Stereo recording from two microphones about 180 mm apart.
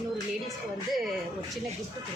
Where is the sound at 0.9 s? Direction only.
Centre (ahead or behind).